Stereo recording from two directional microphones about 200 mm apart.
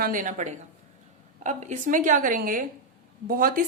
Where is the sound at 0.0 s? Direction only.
40° right (ahead or behind).